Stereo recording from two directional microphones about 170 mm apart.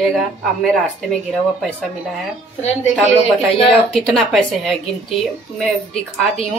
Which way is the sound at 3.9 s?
Centre (ahead or behind).